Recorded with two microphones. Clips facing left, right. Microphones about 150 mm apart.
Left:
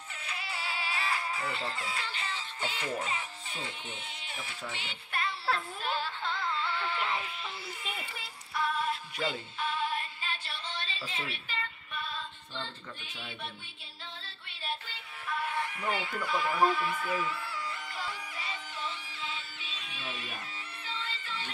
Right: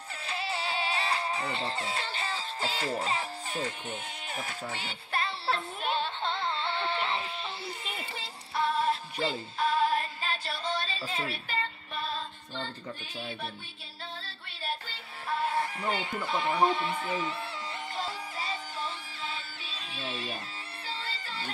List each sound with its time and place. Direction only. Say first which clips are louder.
0.1 s music: right 6 dB; 30° right (ahead or behind)